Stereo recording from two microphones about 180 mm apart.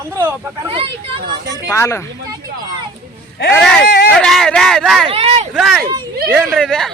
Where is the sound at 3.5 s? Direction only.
5° left (ahead or behind).